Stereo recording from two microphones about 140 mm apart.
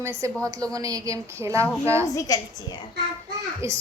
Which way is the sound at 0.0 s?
20° right (ahead or behind).